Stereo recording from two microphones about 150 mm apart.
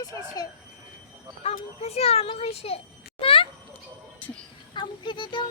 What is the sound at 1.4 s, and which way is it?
A child's voice, 45° left (ahead or behind).